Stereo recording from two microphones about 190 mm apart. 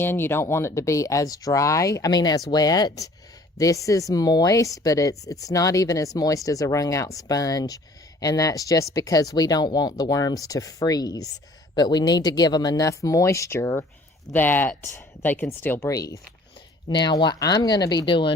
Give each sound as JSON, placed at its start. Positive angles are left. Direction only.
{"t": 0.0, "sound": "speech", "side_deg": 10}